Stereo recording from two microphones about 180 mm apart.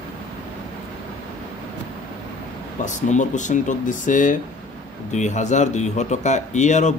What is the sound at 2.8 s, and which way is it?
Speech, 40° left (ahead or behind).